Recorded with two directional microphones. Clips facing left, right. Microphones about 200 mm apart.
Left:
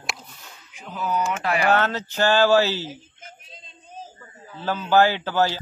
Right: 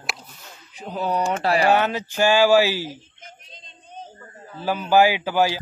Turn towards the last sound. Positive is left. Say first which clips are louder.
# right 2 dB
turn(degrees=-10)  # may be behind; listen again after turning